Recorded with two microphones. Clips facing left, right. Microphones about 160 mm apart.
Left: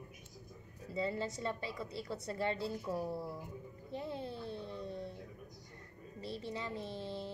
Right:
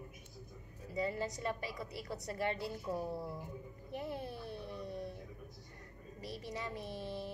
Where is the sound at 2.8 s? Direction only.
Centre (ahead or behind).